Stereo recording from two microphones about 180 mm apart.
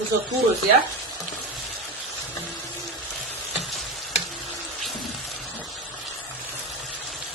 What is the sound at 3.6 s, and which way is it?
Frying, centre (ahead or behind).